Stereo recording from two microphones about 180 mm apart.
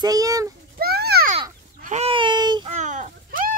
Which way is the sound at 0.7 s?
60° right (ahead or behind).